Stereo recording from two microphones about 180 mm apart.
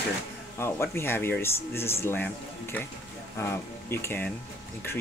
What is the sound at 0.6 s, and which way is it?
Speech, 15° left (ahead or behind).